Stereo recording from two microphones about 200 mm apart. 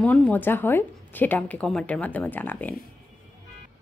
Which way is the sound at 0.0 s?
10° left (ahead or behind).